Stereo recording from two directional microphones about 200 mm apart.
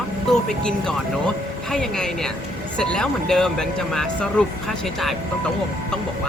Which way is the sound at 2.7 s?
5° left (ahead or behind).